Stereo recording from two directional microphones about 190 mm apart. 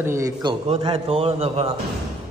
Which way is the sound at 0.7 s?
30° right (ahead or behind).